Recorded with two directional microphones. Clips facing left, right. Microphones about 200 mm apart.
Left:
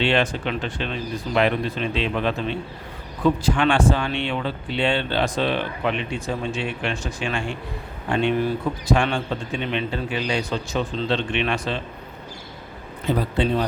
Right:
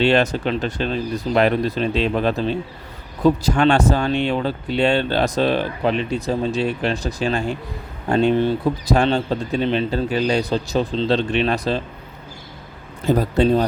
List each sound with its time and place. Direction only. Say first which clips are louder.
0.0 s speech: right 4 dB; 40° right (ahead or behind)
13.1 s speech: right 5 dB; 45° right (ahead or behind)